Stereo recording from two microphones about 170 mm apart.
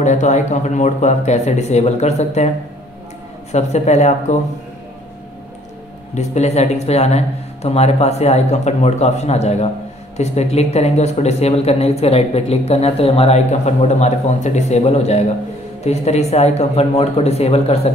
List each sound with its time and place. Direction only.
0.0 s speech: 45° left (ahead or behind)
3.5 s speech: 40° left (ahead or behind)
6.1 s speech: 40° left (ahead or behind)